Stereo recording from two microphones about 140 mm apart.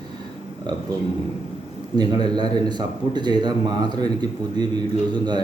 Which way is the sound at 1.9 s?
30° right (ahead or behind).